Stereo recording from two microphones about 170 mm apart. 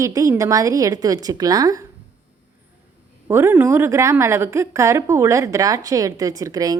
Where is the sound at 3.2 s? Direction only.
15° right (ahead or behind).